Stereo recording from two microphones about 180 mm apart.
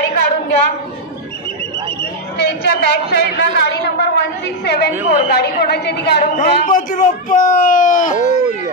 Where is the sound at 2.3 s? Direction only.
65° left (ahead or behind).